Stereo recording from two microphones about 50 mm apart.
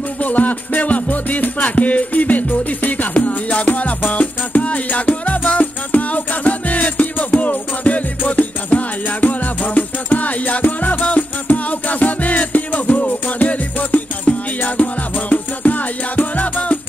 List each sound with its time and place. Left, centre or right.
0.2 s music: left